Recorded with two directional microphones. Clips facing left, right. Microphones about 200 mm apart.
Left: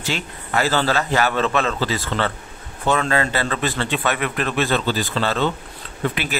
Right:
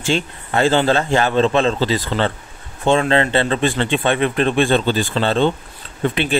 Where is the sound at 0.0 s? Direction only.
30° right (ahead or behind).